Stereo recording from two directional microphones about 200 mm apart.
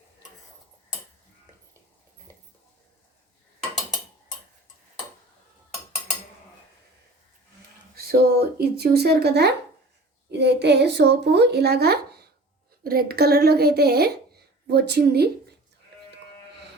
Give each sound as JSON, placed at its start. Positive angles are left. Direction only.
{"t": 7.9, "sound": "speech", "side_deg": -50}